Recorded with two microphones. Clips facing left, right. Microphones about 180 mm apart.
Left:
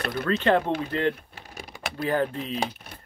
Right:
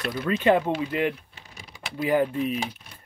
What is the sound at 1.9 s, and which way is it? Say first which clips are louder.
Speech: right 3 dB; 15° right (ahead or behind).